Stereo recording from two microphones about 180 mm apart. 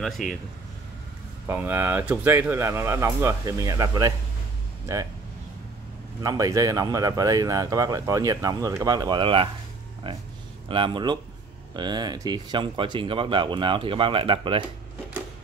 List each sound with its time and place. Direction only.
0.0 s speech: centre (ahead or behind)
1.5 s speech: 10° right (ahead or behind)
6.2 s speech: 20° right (ahead or behind)